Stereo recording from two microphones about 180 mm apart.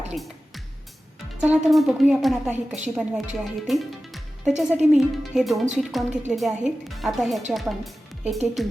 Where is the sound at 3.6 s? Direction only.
Centre (ahead or behind).